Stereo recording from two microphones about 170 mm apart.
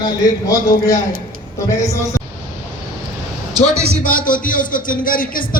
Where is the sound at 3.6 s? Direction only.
50° left (ahead or behind).